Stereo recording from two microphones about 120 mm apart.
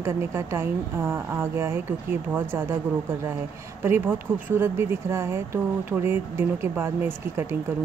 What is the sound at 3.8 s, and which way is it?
Speech, 15° right (ahead or behind).